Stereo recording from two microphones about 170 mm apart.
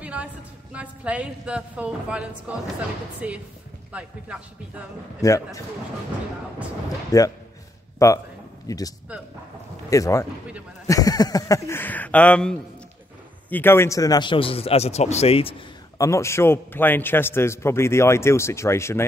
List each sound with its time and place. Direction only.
0.0 s a sound: 10° right (ahead or behind)
0.7 s a woman's voice: 5° right (ahead or behind)
5.2 s speech: 20° left (ahead or behind)
7.1 s a man's voice: 20° left (ahead or behind); by 15.5 s 35° left (ahead or behind)
16.0 s a man's voice: 15° left (ahead or behind)